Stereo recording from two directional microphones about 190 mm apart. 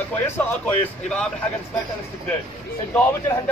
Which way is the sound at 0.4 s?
5° left (ahead or behind).